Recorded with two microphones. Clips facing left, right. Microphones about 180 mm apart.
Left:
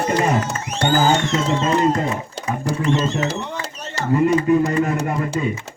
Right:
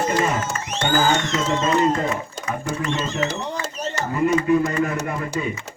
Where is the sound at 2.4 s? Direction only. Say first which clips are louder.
Left 3 dB; 35° left (ahead or behind).